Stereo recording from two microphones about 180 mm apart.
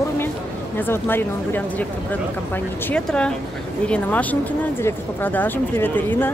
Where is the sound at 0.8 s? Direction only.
10° left (ahead or behind).